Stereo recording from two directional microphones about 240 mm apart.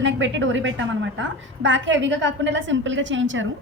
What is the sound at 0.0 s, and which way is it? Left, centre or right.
A woman's voice, right.